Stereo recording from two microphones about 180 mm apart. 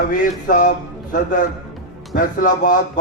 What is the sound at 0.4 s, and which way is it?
A man's voice, 50° left (ahead or behind).